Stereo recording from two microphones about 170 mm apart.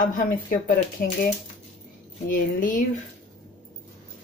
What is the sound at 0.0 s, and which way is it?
Speech, 50° left (ahead or behind).